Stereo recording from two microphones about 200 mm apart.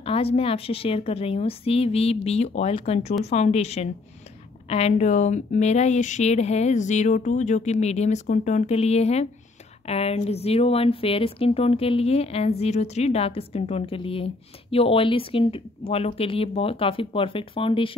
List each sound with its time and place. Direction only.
0.0 s a woman's voice: 30° left (ahead or behind)